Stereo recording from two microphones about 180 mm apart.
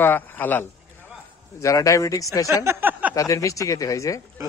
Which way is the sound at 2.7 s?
10° right (ahead or behind).